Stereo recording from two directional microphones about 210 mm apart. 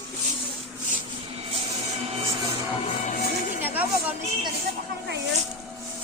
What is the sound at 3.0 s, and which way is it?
Music, 40° left (ahead or behind).